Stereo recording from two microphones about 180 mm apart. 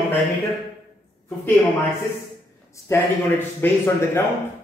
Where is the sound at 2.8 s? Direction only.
15° left (ahead or behind).